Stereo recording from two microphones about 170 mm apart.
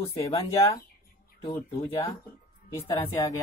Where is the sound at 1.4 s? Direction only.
20° left (ahead or behind).